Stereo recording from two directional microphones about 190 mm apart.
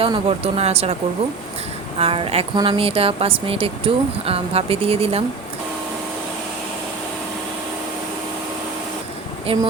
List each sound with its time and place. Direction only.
0.0 s speech: 30° right (ahead or behind)
2.0 s speech: 30° right (ahead or behind)
9.5 s speech: 30° right (ahead or behind)